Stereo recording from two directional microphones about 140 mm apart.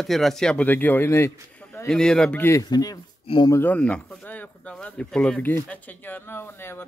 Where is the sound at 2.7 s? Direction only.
25° left (ahead or behind).